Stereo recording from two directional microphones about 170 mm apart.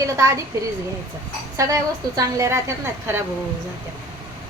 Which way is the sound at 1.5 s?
20° right (ahead or behind).